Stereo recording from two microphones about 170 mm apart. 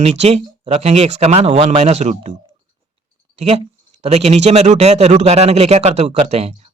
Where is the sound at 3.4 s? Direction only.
35° right (ahead or behind).